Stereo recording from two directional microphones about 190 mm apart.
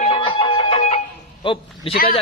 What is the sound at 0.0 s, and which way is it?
Music, 30° left (ahead or behind).